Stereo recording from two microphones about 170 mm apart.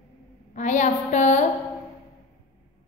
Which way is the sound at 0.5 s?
45° left (ahead or behind).